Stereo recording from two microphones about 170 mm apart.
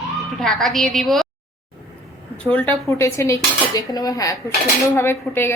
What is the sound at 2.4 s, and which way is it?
A woman's voice, 10° left (ahead or behind).